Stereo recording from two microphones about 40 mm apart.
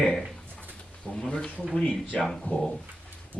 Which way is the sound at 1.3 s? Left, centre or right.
Left.